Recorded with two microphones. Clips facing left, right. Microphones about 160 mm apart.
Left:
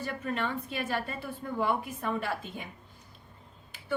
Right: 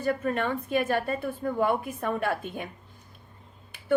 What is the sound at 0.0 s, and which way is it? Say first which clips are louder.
A woman's voice: right 6 dB; 50° right (ahead or behind).